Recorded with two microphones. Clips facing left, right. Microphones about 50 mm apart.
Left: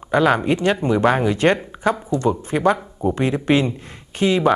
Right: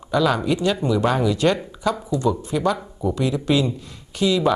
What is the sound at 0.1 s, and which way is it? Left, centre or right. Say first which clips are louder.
A man's voice: left 3 dB; left.